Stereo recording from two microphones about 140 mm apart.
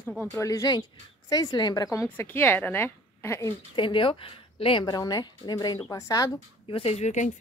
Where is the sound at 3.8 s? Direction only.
35° left (ahead or behind).